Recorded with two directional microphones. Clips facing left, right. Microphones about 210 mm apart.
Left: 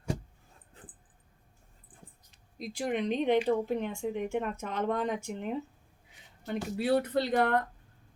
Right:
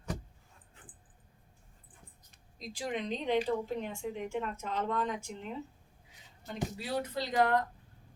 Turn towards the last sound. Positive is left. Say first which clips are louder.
# left 2 dB
turn(degrees=60)  # may be behind; listen again after turning